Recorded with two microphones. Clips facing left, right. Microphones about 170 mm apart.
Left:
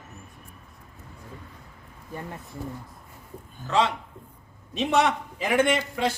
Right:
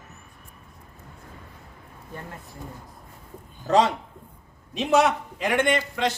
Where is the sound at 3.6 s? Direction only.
40° right (ahead or behind).